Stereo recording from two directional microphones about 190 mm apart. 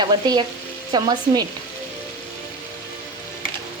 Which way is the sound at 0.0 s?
20° right (ahead or behind).